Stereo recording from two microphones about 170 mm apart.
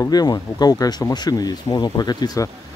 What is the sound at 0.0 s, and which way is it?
Speech, 25° left (ahead or behind).